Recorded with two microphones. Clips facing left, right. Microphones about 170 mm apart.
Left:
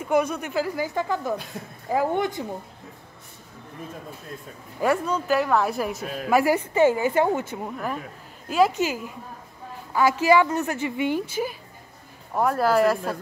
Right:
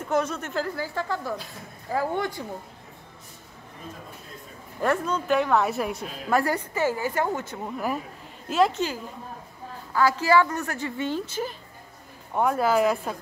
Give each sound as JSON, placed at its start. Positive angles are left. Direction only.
{"t": 0.0, "sound": "a woman's voice", "side_deg": 10}
{"t": 4.7, "sound": "speech", "side_deg": 10}
{"t": 6.7, "sound": "a woman's voice", "side_deg": 20}
{"t": 7.6, "sound": "speech", "side_deg": -5}
{"t": 8.5, "sound": "a woman's voice", "side_deg": 5}